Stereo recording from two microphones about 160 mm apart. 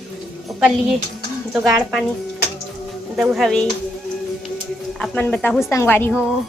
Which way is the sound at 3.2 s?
Centre (ahead or behind).